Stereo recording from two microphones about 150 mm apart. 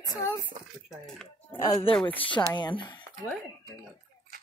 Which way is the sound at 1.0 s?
5° left (ahead or behind).